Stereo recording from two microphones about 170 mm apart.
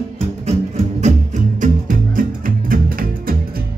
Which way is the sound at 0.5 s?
40° right (ahead or behind).